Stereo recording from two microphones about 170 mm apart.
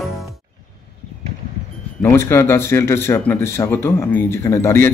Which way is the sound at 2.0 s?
15° left (ahead or behind).